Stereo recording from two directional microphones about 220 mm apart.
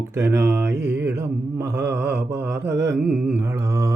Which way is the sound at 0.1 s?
10° right (ahead or behind).